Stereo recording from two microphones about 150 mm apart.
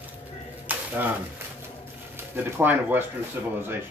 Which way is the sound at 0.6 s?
10° right (ahead or behind).